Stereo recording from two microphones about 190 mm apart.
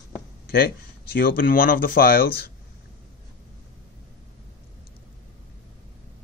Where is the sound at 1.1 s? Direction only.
50° left (ahead or behind).